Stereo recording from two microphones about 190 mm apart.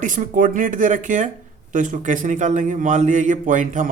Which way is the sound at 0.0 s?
45° right (ahead or behind).